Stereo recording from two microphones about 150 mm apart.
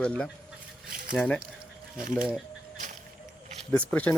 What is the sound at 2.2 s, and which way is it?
Speech, 5° right (ahead or behind).